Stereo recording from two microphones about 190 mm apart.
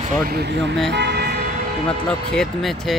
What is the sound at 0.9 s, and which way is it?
Vehicle, 60° right (ahead or behind).